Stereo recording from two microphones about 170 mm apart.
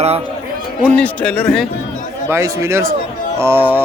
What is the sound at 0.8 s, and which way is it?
Speech, 10° left (ahead or behind).